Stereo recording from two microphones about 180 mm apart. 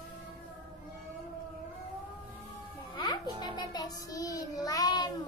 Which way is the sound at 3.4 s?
25° left (ahead or behind).